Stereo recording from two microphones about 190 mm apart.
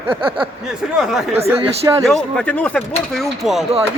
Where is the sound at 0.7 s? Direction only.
5° right (ahead or behind).